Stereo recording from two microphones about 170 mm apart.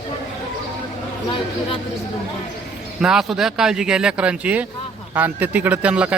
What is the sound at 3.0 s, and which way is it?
A man's voice, 5° right (ahead or behind).